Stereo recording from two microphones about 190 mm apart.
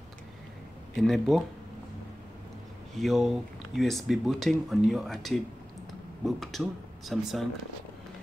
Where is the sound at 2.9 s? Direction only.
Centre (ahead or behind).